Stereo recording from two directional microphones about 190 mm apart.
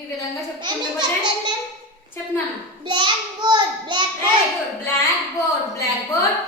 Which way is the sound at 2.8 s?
25° right (ahead or behind).